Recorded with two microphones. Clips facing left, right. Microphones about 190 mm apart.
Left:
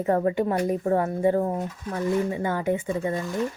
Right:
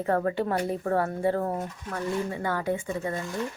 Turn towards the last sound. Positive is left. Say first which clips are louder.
# left 4 dB
turn(degrees=20)  # may be behind; listen again after turning